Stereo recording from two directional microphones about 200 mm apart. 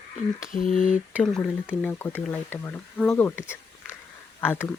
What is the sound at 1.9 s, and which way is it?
Speech, 10° left (ahead or behind).